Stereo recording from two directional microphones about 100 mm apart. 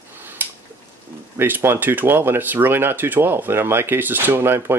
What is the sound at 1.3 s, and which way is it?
Speech, 20° right (ahead or behind).